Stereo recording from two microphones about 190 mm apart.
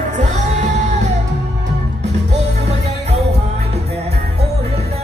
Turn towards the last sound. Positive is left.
turn(degrees=-35)  # may be behind; listen again after turning